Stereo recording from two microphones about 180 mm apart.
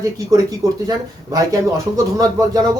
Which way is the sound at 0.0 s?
20° right (ahead or behind).